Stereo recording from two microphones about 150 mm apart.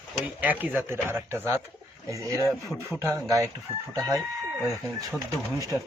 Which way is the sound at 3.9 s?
20° right (ahead or behind).